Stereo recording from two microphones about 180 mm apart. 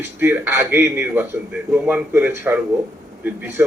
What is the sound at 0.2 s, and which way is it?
A man's voice, 10° right (ahead or behind).